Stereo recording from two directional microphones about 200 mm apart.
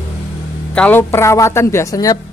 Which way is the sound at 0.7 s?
10° left (ahead or behind).